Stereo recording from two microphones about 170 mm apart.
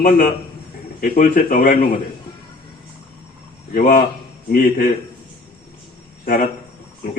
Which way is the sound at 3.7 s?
55° left (ahead or behind).